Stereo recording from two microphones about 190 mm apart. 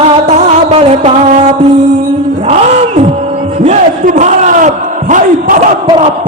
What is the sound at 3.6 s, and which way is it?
Battle cry, 40° right (ahead or behind).